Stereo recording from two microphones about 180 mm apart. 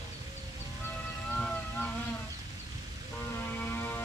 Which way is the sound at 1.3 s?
5° left (ahead or behind).